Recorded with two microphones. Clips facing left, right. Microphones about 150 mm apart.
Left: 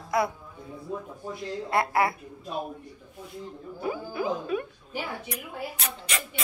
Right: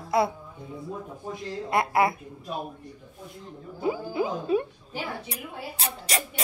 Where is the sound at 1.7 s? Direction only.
20° right (ahead or behind).